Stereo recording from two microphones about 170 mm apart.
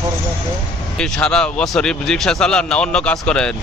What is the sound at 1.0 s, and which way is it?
Speech, 5° left (ahead or behind).